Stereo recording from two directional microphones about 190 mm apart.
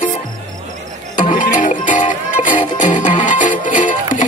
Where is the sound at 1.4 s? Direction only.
40° left (ahead or behind).